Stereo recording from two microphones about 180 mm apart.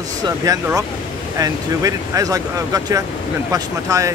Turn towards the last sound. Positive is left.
turn(degrees=-20)  # may be behind; listen again after turning